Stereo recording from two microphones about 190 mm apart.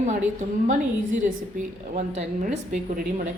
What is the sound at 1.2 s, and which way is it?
A woman's voice, 40° right (ahead or behind).